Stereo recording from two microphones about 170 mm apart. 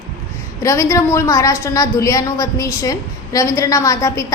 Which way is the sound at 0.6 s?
15° left (ahead or behind).